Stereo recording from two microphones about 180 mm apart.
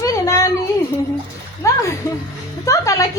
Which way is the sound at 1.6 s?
15° left (ahead or behind).